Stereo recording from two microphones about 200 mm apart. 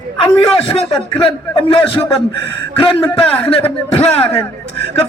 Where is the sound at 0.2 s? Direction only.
30° left (ahead or behind).